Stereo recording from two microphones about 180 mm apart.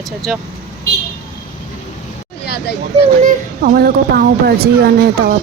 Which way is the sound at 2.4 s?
65° left (ahead or behind).